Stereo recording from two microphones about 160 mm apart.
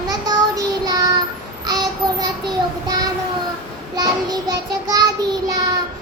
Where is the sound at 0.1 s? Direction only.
25° right (ahead or behind).